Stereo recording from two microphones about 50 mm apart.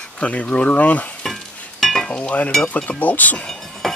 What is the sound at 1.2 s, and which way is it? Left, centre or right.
Stir, centre.